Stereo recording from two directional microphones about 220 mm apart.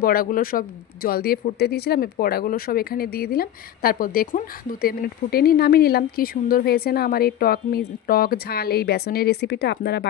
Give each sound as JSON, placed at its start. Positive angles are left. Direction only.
{"t": 0.0, "sound": "speech", "side_deg": 40}